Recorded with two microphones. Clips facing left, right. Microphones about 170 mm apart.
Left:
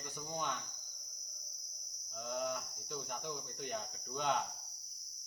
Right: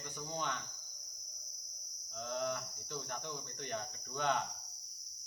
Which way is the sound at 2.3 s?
10° left (ahead or behind).